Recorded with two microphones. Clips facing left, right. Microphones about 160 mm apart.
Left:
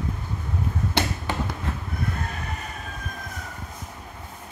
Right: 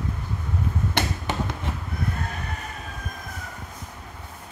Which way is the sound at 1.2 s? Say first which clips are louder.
Even; 20° right (ahead or behind).